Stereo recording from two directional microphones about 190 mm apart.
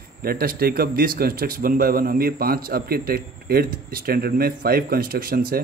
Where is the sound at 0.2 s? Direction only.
50° right (ahead or behind).